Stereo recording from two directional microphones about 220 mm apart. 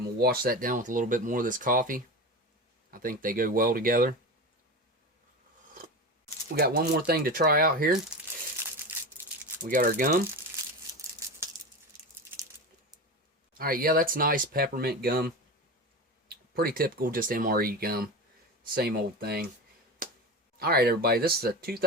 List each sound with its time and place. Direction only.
0.2 s speech: 40° right (ahead or behind)
6.6 s speech: 45° right (ahead or behind)
9.6 s speech: 40° right (ahead or behind)
13.5 s speech: 40° right (ahead or behind)
16.3 s speech: 45° right (ahead or behind)
20.0 s a sound: 40° right (ahead or behind)
20.6 s speech: 45° right (ahead or behind)